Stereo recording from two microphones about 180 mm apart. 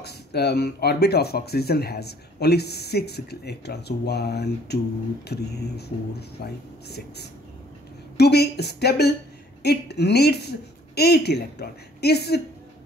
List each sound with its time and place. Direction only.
0.0 s speech: 65° left (ahead or behind)